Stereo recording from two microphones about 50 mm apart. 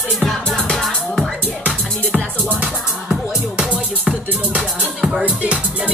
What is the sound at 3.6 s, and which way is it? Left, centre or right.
Music, right.